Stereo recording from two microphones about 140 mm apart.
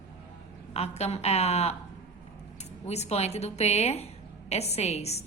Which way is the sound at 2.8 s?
50° left (ahead or behind).